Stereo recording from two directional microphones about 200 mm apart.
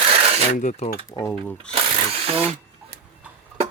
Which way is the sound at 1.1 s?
15° left (ahead or behind).